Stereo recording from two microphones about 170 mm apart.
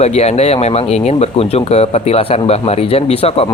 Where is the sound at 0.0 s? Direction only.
40° left (ahead or behind).